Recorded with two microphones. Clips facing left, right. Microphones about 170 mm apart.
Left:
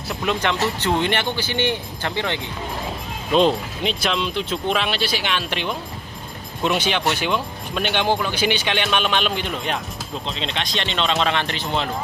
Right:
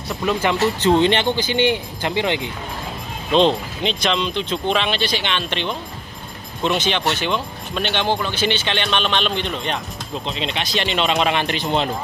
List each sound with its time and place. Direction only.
0.1 s speech: centre (ahead or behind)
3.3 s speech: 5° left (ahead or behind)
10.2 s speech: 5° right (ahead or behind)